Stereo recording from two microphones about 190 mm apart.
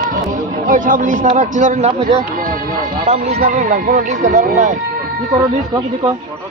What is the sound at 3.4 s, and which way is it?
Speech, 45° right (ahead or behind).